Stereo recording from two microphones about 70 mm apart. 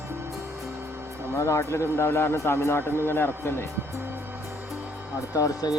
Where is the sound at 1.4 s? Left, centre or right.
Left.